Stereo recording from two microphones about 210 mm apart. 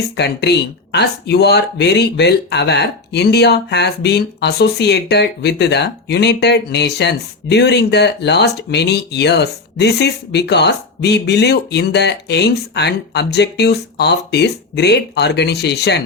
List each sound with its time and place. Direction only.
0.2 s speech: 55° left (ahead or behind)